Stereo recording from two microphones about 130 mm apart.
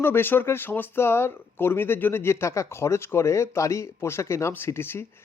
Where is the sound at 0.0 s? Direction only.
15° left (ahead or behind).